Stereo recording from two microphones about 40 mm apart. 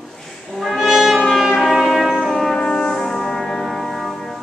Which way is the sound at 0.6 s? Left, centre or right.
Centre.